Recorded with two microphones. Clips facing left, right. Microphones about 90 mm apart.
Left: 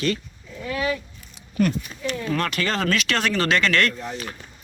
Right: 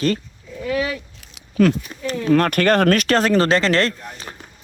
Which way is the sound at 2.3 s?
50° right (ahead or behind).